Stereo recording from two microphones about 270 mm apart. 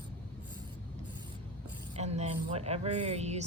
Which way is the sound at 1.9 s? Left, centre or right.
Right.